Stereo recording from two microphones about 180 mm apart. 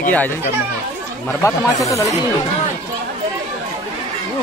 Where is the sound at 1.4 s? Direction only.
20° left (ahead or behind).